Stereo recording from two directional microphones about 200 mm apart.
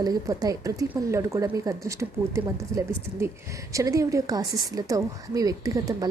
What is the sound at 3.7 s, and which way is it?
A woman's voice, 15° right (ahead or behind).